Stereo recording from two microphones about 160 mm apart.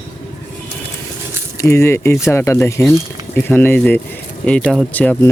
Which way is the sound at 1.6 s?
15° left (ahead or behind).